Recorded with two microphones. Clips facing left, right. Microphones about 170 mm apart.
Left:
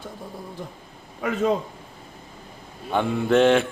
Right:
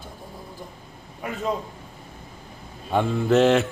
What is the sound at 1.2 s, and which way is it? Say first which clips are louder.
Speech: left 5 dB; 90° left.